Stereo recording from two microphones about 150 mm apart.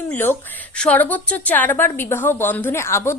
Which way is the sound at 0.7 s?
10° left (ahead or behind).